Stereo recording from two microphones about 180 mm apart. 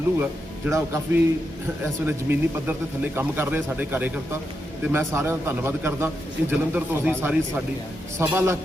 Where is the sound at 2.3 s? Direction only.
10° right (ahead or behind).